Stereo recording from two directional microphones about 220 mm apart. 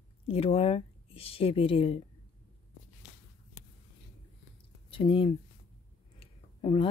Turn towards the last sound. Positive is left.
turn(degrees=25)  # may be behind; listen again after turning